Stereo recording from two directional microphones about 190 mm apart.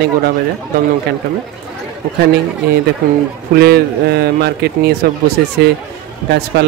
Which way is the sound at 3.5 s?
55° right (ahead or behind).